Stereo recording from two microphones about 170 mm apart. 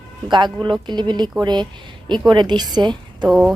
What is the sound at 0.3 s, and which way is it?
A woman's voice, 25° right (ahead or behind).